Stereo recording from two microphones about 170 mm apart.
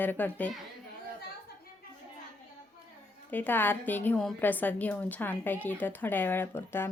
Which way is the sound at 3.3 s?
10° left (ahead or behind).